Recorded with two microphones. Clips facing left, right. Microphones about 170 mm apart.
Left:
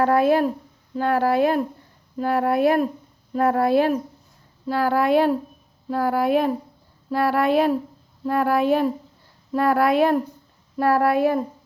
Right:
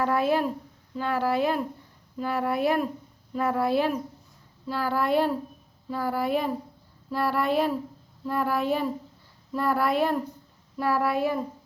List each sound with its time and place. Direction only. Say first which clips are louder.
0.0 s speech: left 6 dB; 55° left (ahead or behind)